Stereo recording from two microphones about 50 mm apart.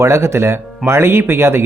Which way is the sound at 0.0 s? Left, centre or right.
Right.